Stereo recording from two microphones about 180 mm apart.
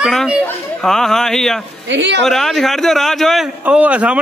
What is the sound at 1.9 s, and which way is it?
Speech, 80° right.